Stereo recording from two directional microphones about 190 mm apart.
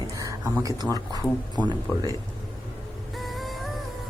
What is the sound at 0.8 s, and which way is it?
Speech, 20° right (ahead or behind).